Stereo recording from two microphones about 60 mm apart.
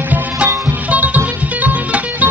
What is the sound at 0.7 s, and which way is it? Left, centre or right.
Music, right.